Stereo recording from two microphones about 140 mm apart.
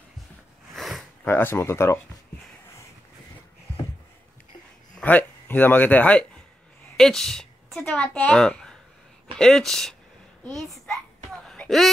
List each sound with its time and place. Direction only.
0.7 s gasp: centre (ahead or behind)
1.2 s speech: 15° left (ahead or behind)
4.9 s a woman's voice: 10° left (ahead or behind)
11.4 s a sound: 5° left (ahead or behind)